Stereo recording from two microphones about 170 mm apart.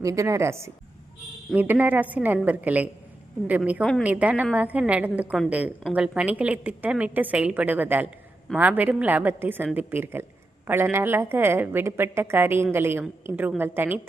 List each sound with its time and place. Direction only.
0.0 s a woman's voice: 20° right (ahead or behind)